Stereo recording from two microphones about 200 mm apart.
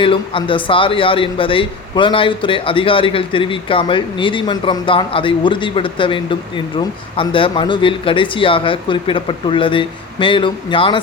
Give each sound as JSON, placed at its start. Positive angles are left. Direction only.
{"t": 0.0, "sound": "a man's voice", "side_deg": 25}